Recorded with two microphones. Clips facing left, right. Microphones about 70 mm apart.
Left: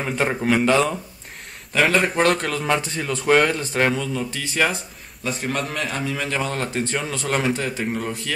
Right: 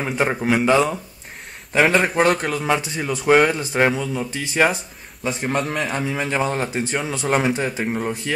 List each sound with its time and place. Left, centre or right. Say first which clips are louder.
0.0 s speech: right 1 dB; centre